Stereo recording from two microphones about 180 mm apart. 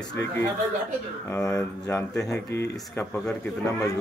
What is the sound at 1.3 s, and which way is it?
Speech, 15° left (ahead or behind).